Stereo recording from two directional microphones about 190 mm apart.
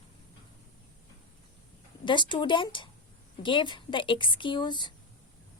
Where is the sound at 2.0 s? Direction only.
25° left (ahead or behind).